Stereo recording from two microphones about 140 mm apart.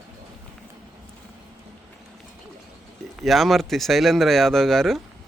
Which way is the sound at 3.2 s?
Centre (ahead or behind).